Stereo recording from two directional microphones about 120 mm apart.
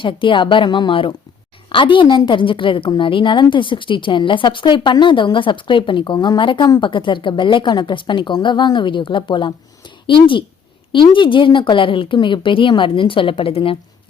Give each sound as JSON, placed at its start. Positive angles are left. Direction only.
{"t": 0.0, "sound": "a woman's voice", "side_deg": 45}